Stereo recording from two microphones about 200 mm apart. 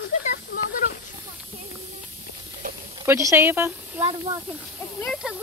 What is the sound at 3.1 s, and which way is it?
Speech, 15° right (ahead or behind).